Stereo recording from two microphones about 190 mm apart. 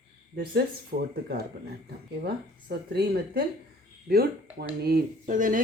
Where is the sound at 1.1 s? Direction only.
60° right (ahead or behind).